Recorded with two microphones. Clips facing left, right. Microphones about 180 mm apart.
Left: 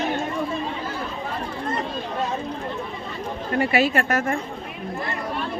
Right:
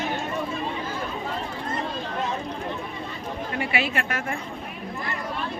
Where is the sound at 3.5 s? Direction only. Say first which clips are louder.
Left 7 dB; 40° left (ahead or behind).